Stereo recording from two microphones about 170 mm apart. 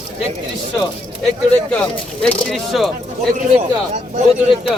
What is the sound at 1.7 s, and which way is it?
Speech, 5° left (ahead or behind).